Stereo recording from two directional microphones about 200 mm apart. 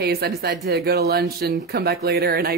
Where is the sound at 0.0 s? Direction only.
50° right (ahead or behind).